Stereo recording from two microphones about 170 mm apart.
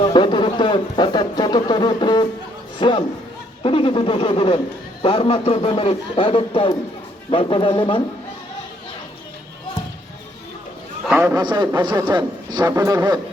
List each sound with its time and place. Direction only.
0.0 s a sound: 25° left (ahead or behind)
2.7 s a man's voice: 30° left (ahead or behind)
11.1 s a man's voice: 10° right (ahead or behind)
11.3 s a man's voice: 25° right (ahead or behind)